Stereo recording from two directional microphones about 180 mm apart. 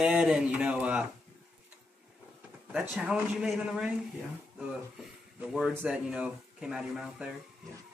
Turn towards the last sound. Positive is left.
turn(degrees=-5)  # may be behind; listen again after turning